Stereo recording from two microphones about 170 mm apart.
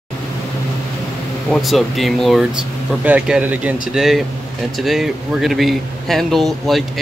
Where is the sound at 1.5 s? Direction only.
Centre (ahead or behind).